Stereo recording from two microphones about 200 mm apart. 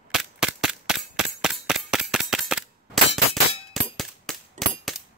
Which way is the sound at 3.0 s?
30° left (ahead or behind).